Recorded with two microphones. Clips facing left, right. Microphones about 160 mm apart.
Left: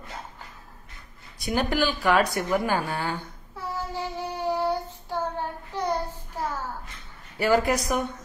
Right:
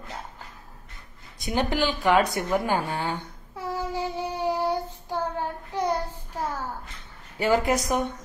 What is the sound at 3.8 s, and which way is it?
Child singing, 15° right (ahead or behind).